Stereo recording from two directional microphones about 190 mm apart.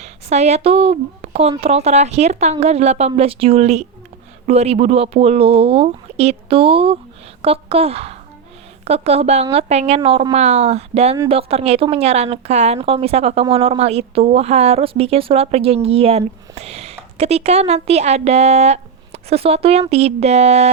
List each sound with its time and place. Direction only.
0.0 s a woman's voice: 35° right (ahead or behind)